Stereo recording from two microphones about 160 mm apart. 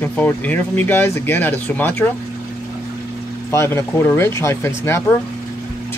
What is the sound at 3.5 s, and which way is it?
Speech, 15° left (ahead or behind).